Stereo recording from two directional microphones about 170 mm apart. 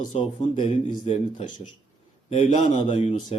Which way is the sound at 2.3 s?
45° left (ahead or behind).